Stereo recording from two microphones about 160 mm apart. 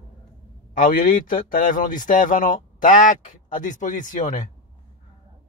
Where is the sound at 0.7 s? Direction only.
60° left (ahead or behind).